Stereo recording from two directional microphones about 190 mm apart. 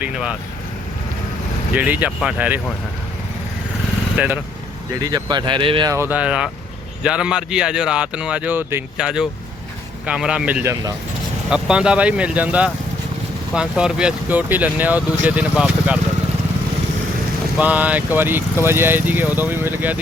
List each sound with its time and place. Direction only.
0.0 s speech: 5° right (ahead or behind)
1.7 s speech: 10° right (ahead or behind)
4.2 s speech: 10° right (ahead or behind)
4.9 s speech: 20° right (ahead or behind)
17.6 s speech: 10° right (ahead or behind)